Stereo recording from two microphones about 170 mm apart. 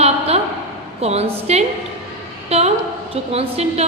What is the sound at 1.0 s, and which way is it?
Speech, 40° right (ahead or behind).